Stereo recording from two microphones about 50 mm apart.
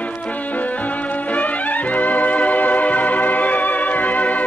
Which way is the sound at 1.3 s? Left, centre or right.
Left.